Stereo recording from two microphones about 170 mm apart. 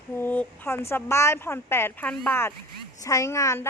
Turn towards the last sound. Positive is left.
turn(degrees=15)  # may be behind; listen again after turning